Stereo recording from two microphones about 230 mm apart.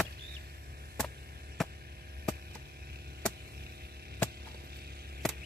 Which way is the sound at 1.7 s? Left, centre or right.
Right.